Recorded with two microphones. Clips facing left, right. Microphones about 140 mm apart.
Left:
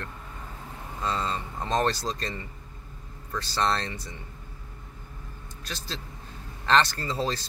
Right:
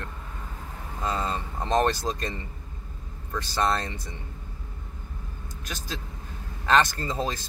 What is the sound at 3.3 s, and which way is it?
Speech, 15° right (ahead or behind).